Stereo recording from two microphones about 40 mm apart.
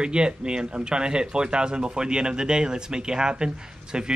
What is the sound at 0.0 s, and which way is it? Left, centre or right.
Speech, right.